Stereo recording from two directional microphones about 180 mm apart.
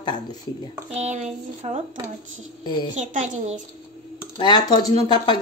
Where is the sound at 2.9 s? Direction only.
40° right (ahead or behind).